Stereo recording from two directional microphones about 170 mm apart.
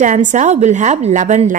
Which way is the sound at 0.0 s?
45° right (ahead or behind).